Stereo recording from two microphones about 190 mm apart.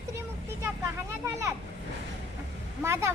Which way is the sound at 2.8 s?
15° right (ahead or behind).